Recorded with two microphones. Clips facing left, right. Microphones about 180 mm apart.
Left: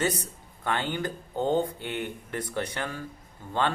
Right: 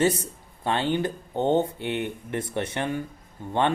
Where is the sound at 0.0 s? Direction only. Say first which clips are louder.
Right 6 dB; 25° right (ahead or behind).